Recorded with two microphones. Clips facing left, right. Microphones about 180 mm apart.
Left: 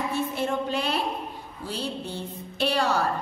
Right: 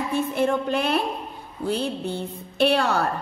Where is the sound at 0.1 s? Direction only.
55° right (ahead or behind).